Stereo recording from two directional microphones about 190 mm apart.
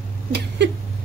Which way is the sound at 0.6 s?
65° right (ahead or behind).